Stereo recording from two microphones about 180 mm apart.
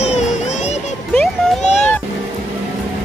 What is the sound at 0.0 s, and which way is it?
Music, 40° left (ahead or behind).